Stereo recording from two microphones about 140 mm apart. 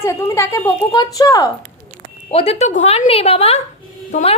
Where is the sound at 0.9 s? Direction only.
30° left (ahead or behind).